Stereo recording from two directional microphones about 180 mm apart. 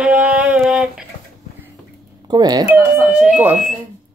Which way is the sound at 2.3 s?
20° right (ahead or behind).